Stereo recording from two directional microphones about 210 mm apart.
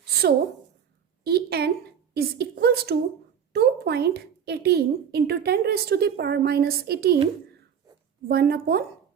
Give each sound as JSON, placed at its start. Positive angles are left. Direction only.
{"t": 1.2, "sound": "a woman's voice", "side_deg": -50}
{"t": 8.3, "sound": "a woman's voice", "side_deg": -45}